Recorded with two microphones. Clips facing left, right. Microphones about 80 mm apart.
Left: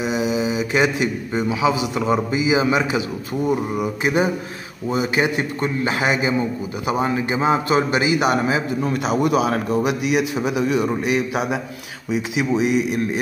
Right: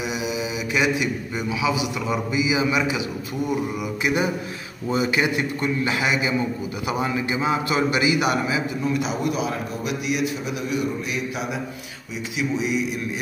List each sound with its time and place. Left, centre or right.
0.0 s a man's voice: left
12.1 s speech: left